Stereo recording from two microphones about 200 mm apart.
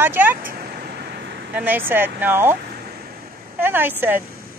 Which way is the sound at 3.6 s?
10° right (ahead or behind).